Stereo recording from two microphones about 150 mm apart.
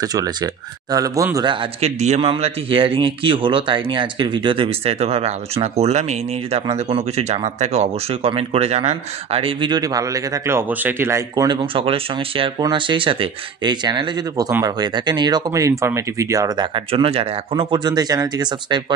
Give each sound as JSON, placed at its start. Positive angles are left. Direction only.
{"t": 0.0, "sound": "speech", "side_deg": -25}
{"t": 2.0, "sound": "speech", "side_deg": -50}